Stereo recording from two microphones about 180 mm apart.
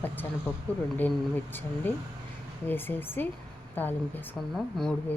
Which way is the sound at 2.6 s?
10° left (ahead or behind).